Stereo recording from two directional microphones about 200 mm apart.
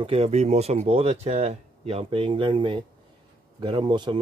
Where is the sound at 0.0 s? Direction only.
30° right (ahead or behind).